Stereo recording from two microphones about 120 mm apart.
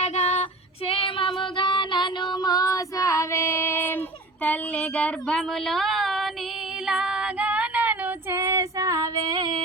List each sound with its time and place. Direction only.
0.0 s child singing: 65° left (ahead or behind)
0.9 s female singing: 45° left (ahead or behind); by 3.9 s 20° left (ahead or behind)
4.4 s a sound: 10° left (ahead or behind)
6.8 s female singing: 5° right (ahead or behind); by 9.2 s 30° right (ahead or behind)